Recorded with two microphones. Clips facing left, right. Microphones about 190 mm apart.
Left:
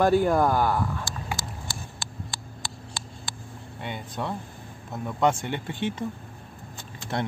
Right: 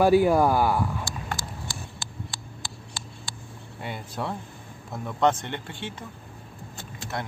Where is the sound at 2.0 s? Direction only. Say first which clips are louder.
Left 1 dB; 60° left (ahead or behind).